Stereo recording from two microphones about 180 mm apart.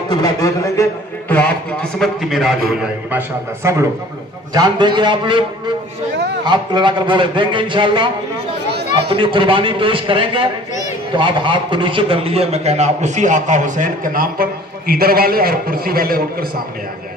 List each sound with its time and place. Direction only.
0.1 s a man's voice: 20° left (ahead or behind)
1.3 s a man's voice: 5° left (ahead or behind); by 3.8 s 15° right (ahead or behind)
4.6 s a man's voice: 25° right (ahead or behind)
6.4 s a man's voice: 25° right (ahead or behind)
9.1 s a man's voice: 25° right (ahead or behind); by 16.4 s 55° right (ahead or behind)